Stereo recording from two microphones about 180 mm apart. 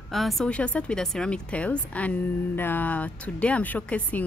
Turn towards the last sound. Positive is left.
turn(degrees=10)  # may be behind; listen again after turning